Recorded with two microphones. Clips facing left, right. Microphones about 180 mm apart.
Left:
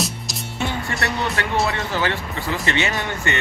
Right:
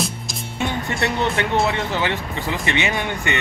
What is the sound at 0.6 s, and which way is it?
Music, 20° right (ahead or behind).